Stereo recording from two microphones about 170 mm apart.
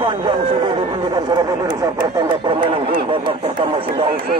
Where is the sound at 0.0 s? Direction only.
30° right (ahead or behind).